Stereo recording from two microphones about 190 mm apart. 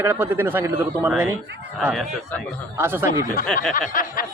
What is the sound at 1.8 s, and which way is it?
Speech, centre (ahead or behind).